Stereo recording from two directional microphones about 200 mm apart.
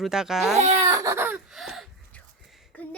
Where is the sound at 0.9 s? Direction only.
15° right (ahead or behind).